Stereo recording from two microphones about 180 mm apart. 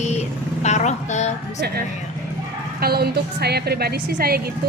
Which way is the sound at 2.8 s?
60° right (ahead or behind).